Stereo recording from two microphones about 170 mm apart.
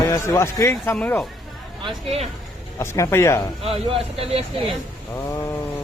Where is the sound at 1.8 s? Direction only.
35° right (ahead or behind).